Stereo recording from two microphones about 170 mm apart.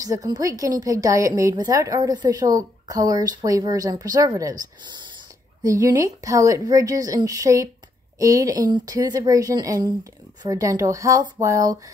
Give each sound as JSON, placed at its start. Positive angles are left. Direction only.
{"t": 0.0, "sound": "a woman's voice", "side_deg": -20}